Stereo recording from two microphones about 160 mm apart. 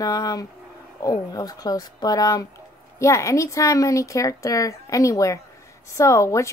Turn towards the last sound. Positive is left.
turn(degrees=20)  # may be behind; listen again after turning